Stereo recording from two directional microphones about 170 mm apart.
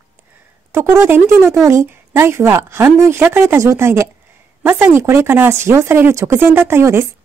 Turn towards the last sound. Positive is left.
turn(degrees=-15)  # may be behind; listen again after turning